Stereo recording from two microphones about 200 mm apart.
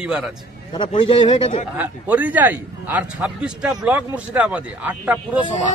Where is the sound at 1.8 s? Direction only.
10° right (ahead or behind).